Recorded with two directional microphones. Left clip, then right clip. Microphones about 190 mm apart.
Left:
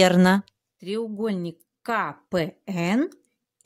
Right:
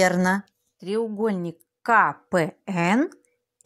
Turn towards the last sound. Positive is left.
turn(degrees=10)  # may be behind; listen again after turning